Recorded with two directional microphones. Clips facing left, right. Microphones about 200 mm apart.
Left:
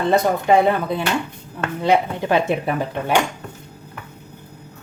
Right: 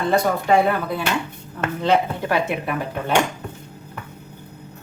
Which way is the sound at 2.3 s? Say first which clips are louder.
Left 4 dB; 30° left (ahead or behind).